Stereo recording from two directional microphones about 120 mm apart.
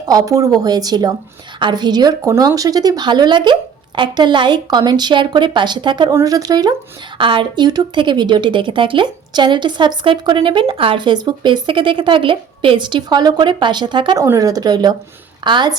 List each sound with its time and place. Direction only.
0.1 s speech: 30° right (ahead or behind)
7.2 s speech: 45° right (ahead or behind)